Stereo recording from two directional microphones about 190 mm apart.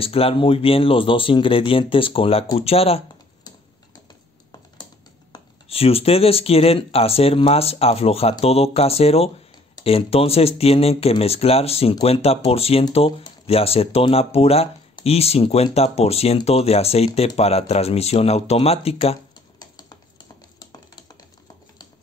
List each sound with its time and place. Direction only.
0.0 s speech: 30° left (ahead or behind)
5.3 s speech: 30° left (ahead or behind)
20.7 s typing: 20° left (ahead or behind)